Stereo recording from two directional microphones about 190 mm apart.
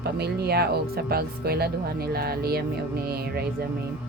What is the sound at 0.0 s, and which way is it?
Speech, 55° right (ahead or behind).